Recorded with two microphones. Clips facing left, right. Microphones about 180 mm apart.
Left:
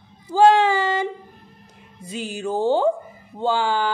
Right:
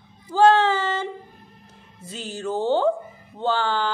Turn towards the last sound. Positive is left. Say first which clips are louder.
# left 2 dB
turn(degrees=10)  # may be behind; listen again after turning